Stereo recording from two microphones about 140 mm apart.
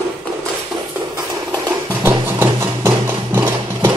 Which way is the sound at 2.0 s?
20° right (ahead or behind).